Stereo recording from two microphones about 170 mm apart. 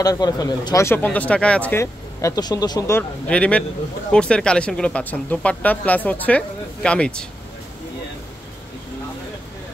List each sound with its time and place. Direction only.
0.0 s speech: 20° left (ahead or behind)
3.0 s speech: 5° left (ahead or behind)